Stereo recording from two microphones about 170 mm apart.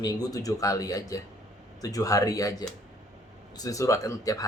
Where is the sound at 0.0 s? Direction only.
20° left (ahead or behind).